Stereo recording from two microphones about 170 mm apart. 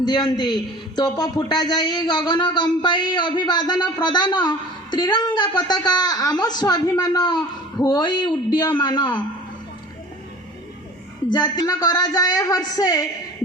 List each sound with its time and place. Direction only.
0.0 s a man's voice: 25° left (ahead or behind)
11.3 s a man's voice: 25° left (ahead or behind)